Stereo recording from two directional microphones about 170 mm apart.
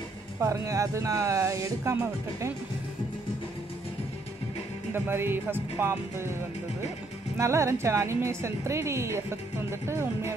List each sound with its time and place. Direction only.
0.4 s a woman's voice: 20° right (ahead or behind)
4.9 s a woman's voice: 10° right (ahead or behind)
7.3 s a woman's voice: 15° right (ahead or behind)